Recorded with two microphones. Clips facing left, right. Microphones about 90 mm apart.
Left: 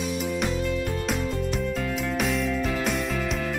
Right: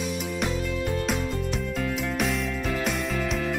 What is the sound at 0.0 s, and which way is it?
Music, centre (ahead or behind).